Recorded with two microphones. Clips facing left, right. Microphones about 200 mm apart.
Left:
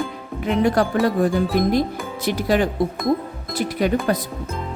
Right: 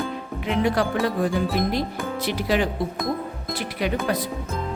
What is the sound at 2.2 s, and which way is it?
Speech, 45° left (ahead or behind).